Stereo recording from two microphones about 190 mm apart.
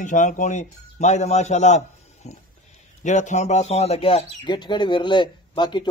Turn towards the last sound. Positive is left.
turn(degrees=25)  # may be behind; listen again after turning